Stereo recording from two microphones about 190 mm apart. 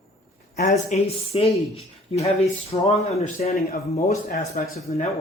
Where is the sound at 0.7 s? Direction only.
35° left (ahead or behind).